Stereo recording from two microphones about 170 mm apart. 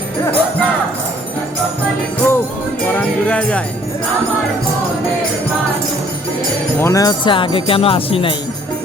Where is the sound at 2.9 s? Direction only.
10° left (ahead or behind).